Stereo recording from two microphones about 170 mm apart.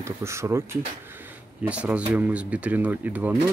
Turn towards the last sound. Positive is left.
turn(degrees=-10)  # may be behind; listen again after turning